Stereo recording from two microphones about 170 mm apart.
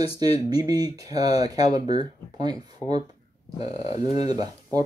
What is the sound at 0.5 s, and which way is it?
Speech, 25° right (ahead or behind).